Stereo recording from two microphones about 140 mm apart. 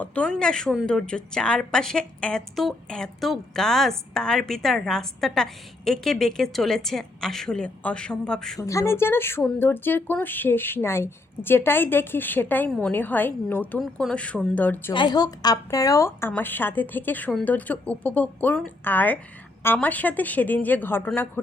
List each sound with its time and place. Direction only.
0.0 s a woman's voice: 10° left (ahead or behind)
8.6 s speech: 20° left (ahead or behind)
13.7 s speech: centre (ahead or behind)
14.9 s speech: 30° left (ahead or behind); by 21.2 s 15° left (ahead or behind)